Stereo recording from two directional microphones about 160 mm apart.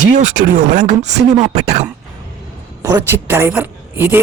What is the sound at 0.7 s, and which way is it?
Speech, 55° right (ahead or behind).